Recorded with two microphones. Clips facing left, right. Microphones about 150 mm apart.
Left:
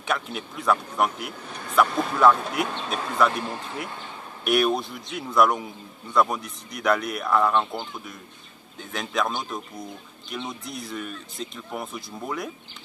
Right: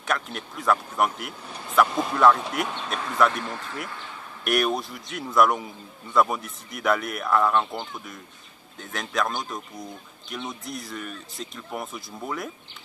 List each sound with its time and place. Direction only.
0.0 s speech: centre (ahead or behind)
3.4 s speech: 20° left (ahead or behind)
4.5 s speech: centre (ahead or behind)